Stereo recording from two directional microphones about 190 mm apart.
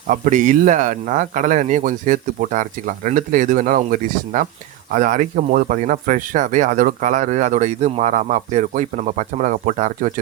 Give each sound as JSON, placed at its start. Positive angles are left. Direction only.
{"t": 0.1, "sound": "speech", "side_deg": -45}